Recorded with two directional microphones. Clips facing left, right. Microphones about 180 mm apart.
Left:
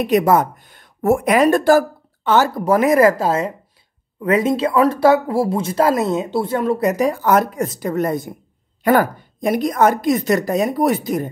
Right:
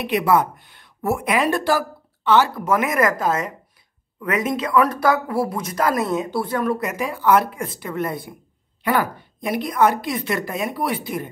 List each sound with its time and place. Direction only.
0.0 s speech: 45° left (ahead or behind); by 6.9 s 25° left (ahead or behind)
6.9 s speech: 40° left (ahead or behind)